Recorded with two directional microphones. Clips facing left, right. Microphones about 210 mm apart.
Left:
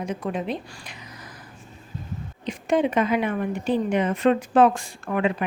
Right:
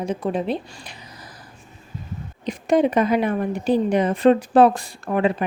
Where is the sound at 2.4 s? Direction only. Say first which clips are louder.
Right 4 dB; 40° right (ahead or behind).